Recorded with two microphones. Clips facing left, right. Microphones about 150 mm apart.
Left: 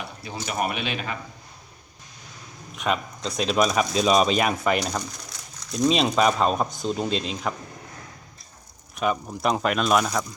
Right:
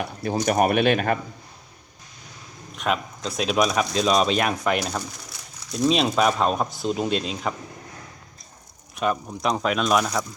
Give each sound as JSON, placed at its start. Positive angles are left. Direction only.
{"t": 0.0, "sound": "a sound", "side_deg": -50}
{"t": 0.4, "sound": "speech", "side_deg": -50}
{"t": 2.7, "sound": "speech", "side_deg": 0}
{"t": 9.0, "sound": "speech", "side_deg": 0}